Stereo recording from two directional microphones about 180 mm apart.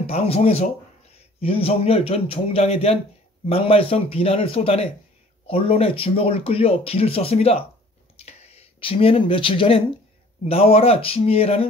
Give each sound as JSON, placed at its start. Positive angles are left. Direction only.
{"t": 0.0, "sound": "speech", "side_deg": 35}